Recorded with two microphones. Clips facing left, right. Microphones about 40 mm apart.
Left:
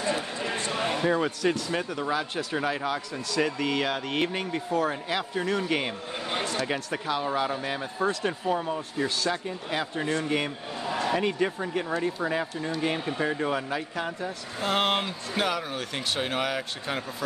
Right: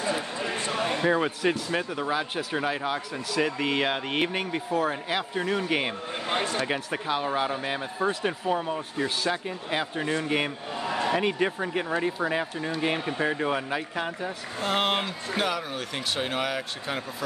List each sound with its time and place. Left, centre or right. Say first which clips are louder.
0.0 s a sound: even; centre
1.0 s speech: right 1 dB; centre
3.6 s speech: right 1 dB; right
14.6 s speech: even; centre